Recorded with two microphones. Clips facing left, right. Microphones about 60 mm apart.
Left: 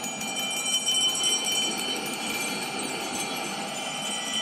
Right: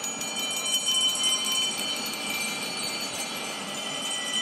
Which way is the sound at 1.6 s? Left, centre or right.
Left.